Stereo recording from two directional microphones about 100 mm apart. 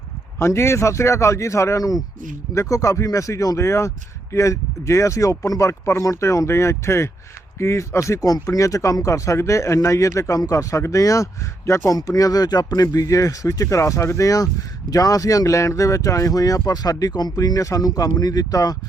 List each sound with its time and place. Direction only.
0.3 s speech: 25° left (ahead or behind)